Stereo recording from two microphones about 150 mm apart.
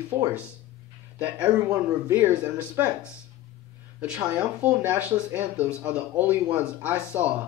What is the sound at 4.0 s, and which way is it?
Speech, 10° right (ahead or behind).